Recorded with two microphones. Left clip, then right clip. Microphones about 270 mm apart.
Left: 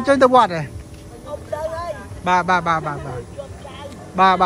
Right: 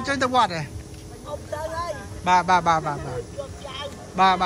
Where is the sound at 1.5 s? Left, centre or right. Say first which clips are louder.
Left 4 dB; centre.